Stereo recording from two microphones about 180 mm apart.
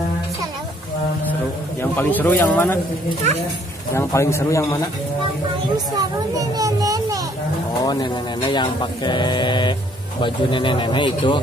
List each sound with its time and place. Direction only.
1.8 s speech: 10° left (ahead or behind)
3.9 s speech: 15° left (ahead or behind)
5.9 s children playing: 20° right (ahead or behind)
7.8 s speech: 20° left (ahead or behind)